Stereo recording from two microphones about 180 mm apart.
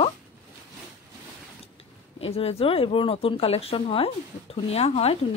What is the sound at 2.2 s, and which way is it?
Speech, 35° left (ahead or behind).